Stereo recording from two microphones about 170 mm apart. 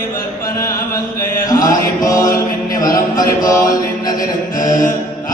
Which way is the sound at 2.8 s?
20° left (ahead or behind).